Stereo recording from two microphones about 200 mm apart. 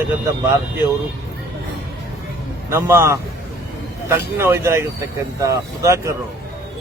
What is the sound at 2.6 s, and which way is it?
A man's voice, 10° right (ahead or behind).